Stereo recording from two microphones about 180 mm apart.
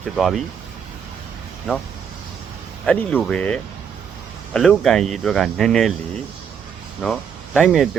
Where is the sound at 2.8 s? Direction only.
5° left (ahead or behind).